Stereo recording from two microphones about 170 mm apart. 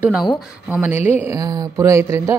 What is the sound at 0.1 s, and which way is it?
Speech, 5° right (ahead or behind).